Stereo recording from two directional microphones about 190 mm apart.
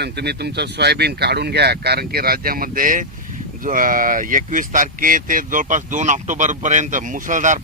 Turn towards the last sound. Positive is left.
turn(degrees=-40)  # may be behind; listen again after turning